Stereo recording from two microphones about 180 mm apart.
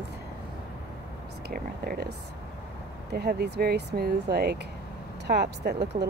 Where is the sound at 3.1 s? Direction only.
60° right (ahead or behind).